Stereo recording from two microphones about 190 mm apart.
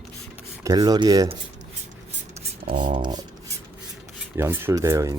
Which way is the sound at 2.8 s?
25° right (ahead or behind).